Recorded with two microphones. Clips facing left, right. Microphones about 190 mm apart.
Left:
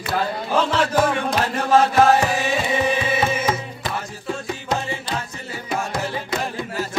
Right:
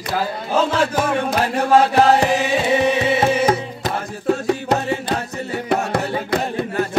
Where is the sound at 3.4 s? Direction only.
50° right (ahead or behind).